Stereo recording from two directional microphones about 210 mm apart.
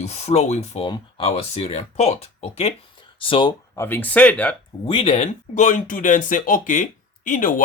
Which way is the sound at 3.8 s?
10° left (ahead or behind).